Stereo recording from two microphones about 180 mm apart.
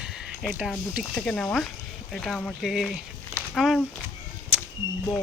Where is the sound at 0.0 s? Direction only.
5° right (ahead or behind).